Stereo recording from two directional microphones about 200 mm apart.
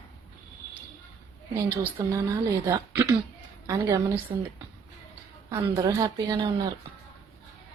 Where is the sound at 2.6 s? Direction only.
15° right (ahead or behind).